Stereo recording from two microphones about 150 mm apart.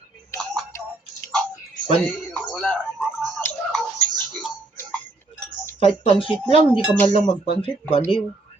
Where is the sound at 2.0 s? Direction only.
10° left (ahead or behind).